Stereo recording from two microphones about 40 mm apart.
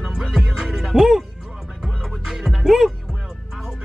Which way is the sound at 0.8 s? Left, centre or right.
Centre.